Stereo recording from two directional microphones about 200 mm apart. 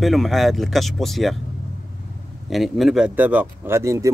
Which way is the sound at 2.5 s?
Centre (ahead or behind).